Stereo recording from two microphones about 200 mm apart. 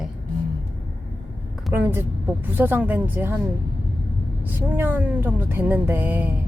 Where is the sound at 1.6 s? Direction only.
10° right (ahead or behind).